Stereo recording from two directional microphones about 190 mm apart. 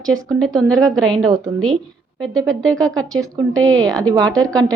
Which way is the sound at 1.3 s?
25° right (ahead or behind).